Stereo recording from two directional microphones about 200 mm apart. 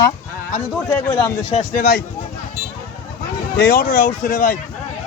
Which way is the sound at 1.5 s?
45° left (ahead or behind).